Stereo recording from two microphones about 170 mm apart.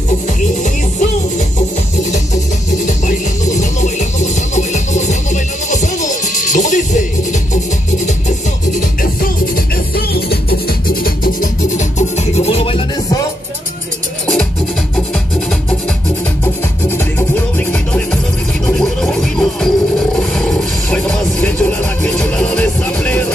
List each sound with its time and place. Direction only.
2.9 s music: 45° left (ahead or behind)
9.9 s music: 65° left (ahead or behind); by 13.2 s 30° left (ahead or behind)
17.6 s music: 5° left (ahead or behind)